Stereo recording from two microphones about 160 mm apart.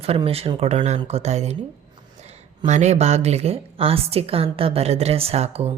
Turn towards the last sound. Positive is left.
turn(degrees=-40)  # may be behind; listen again after turning